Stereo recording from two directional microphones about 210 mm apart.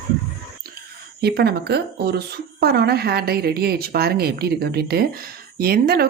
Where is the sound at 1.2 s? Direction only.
50° right (ahead or behind).